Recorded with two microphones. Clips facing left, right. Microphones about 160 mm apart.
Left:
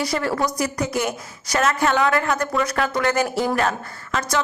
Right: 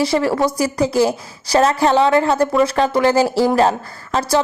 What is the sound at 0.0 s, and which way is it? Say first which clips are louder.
A woman's voice: right 6 dB; 25° right (ahead or behind).